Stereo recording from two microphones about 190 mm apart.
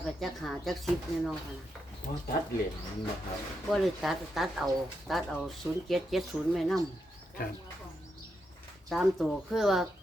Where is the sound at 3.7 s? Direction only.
Centre (ahead or behind).